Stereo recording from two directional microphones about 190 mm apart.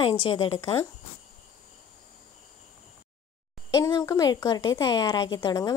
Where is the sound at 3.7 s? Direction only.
20° left (ahead or behind).